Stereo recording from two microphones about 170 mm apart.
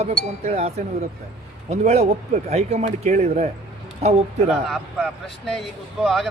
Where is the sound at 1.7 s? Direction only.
40° right (ahead or behind).